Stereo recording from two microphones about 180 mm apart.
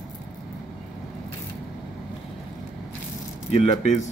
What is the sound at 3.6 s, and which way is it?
Speech, 40° left (ahead or behind).